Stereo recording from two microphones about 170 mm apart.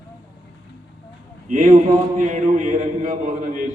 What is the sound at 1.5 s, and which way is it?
A man's voice, 50° right (ahead or behind).